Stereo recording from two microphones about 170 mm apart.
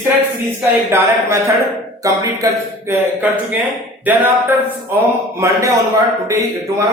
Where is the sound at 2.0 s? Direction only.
20° right (ahead or behind).